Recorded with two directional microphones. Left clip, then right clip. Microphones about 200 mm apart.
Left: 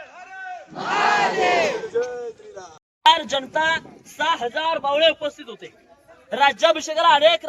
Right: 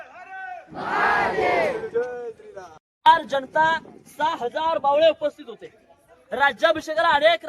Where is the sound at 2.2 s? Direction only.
20° right (ahead or behind).